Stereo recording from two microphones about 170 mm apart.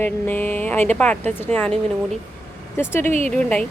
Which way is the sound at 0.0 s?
10° left (ahead or behind).